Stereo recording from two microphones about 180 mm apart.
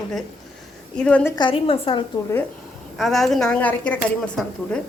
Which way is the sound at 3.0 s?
Centre (ahead or behind).